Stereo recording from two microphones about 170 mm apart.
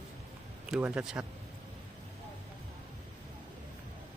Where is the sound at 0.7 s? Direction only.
5° right (ahead or behind).